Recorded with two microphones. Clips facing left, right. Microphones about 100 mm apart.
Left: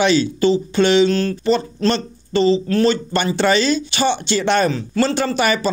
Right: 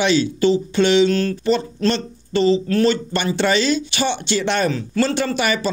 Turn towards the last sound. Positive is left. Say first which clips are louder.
# left 2 dB
turn(degrees=40)  # may be behind; listen again after turning